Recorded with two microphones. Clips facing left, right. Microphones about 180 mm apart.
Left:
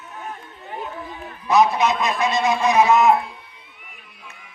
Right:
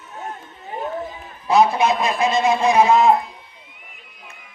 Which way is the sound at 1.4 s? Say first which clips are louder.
Right 1 dB; 30° right (ahead or behind).